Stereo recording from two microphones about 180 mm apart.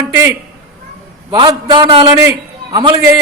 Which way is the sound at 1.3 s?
25° right (ahead or behind).